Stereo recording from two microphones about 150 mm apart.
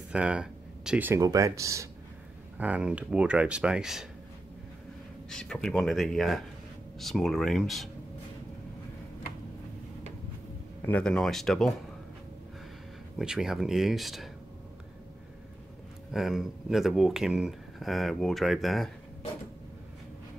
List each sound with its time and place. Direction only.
0.1 s speech: 5° right (ahead or behind)
2.5 s speech: 10° right (ahead or behind)
5.3 s speech: 5° left (ahead or behind)
10.8 s speech: 10° left (ahead or behind)
13.2 s speech: 5° right (ahead or behind)
16.1 s speech: centre (ahead or behind)